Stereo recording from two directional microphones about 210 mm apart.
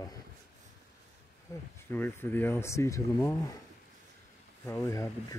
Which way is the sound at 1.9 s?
10° left (ahead or behind).